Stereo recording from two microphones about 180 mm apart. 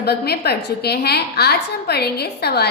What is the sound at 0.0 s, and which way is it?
A woman's voice, 65° left (ahead or behind).